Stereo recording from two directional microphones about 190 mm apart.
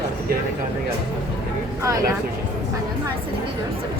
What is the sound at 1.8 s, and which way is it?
Speech, 15° right (ahead or behind).